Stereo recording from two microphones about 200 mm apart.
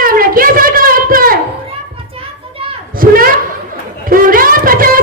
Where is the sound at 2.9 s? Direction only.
45° right (ahead or behind).